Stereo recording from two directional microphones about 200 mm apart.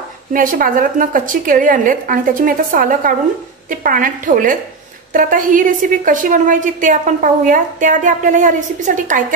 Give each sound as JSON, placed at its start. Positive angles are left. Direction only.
{"t": 0.3, "sound": "a woman's voice", "side_deg": -45}